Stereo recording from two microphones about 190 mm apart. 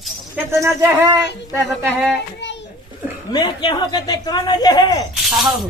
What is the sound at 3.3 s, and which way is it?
Speech, 25° left (ahead or behind).